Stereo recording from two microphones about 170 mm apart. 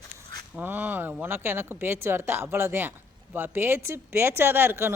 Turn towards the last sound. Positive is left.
turn(degrees=-15)  # may be behind; listen again after turning